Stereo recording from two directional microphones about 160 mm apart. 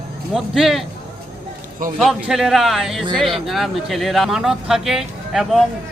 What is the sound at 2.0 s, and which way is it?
Speech, centre (ahead or behind).